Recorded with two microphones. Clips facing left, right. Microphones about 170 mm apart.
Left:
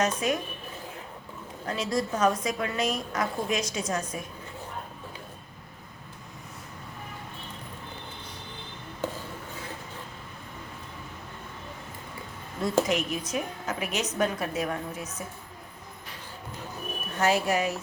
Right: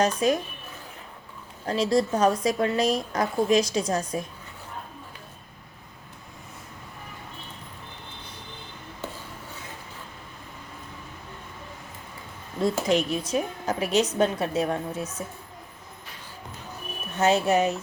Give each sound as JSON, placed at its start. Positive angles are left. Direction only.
{"t": 0.0, "sound": "a woman's voice", "side_deg": -35}
{"t": 1.6, "sound": "a woman's voice", "side_deg": -35}
{"t": 12.6, "sound": "a woman's voice", "side_deg": -30}
{"t": 17.2, "sound": "speech", "side_deg": -25}